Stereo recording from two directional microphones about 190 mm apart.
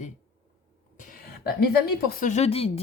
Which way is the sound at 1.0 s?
50° left (ahead or behind).